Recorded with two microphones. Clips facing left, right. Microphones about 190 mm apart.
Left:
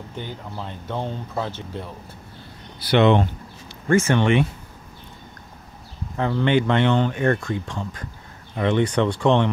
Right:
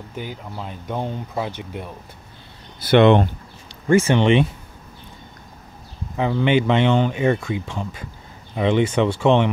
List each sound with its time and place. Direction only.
0.1 s speech: 10° right (ahead or behind)
2.8 s speech: 55° right (ahead or behind)
4.1 s speech: 20° right (ahead or behind)
6.1 s speech: 15° right (ahead or behind)